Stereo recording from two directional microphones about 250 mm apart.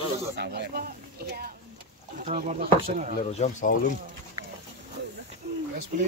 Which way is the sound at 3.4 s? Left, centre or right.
Left.